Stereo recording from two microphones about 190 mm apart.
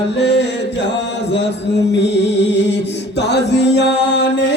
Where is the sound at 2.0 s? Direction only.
65° left (ahead or behind).